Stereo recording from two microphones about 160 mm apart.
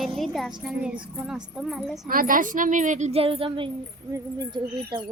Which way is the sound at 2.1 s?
60° right (ahead or behind).